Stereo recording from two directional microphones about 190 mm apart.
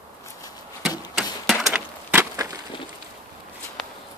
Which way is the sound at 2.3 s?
15° right (ahead or behind).